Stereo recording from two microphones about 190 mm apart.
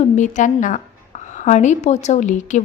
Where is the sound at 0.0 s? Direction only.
40° left (ahead or behind).